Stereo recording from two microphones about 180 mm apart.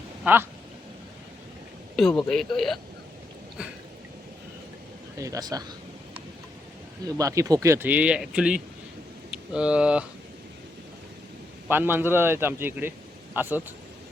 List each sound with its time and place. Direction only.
0.3 s speech: 10° right (ahead or behind)
2.0 s speech: 5° left (ahead or behind)
5.1 s speech: 20° right (ahead or behind)
7.0 s speech: 20° right (ahead or behind)
11.7 s speech: 10° right (ahead or behind)